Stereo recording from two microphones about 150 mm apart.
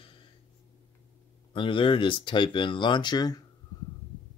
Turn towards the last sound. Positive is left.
turn(degrees=25)  # may be behind; listen again after turning